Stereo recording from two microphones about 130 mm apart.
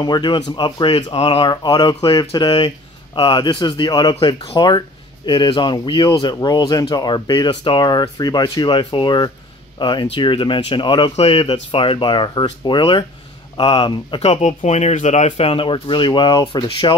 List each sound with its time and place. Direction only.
0.0 s speech: 35° left (ahead or behind)
14.2 s speech: 55° left (ahead or behind); by 16.9 s 40° left (ahead or behind)